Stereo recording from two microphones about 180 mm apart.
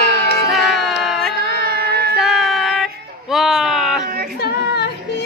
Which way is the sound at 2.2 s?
Centre (ahead or behind).